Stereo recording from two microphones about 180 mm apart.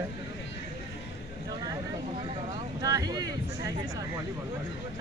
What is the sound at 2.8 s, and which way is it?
Speech, 20° right (ahead or behind).